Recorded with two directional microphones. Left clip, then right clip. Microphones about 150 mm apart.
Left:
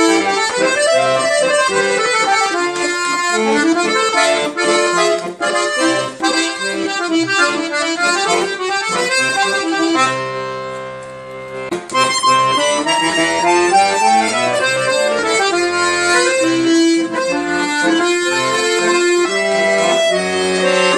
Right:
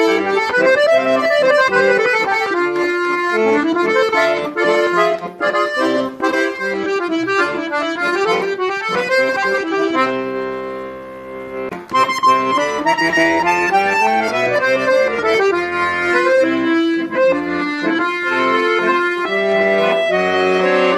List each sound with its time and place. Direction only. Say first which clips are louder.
0.0 s accordion: left 1 dB; 45° right (ahead or behind)
8.0 s accordion: left 2 dB; 45° right (ahead or behind)
11.9 s music: even; 50° right (ahead or behind)
17.8 s accordion: left 1 dB; 30° right (ahead or behind)
19.5 s accordion: even; 40° right (ahead or behind)